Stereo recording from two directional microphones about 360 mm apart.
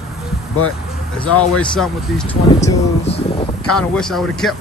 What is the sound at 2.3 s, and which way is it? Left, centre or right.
Speech, centre.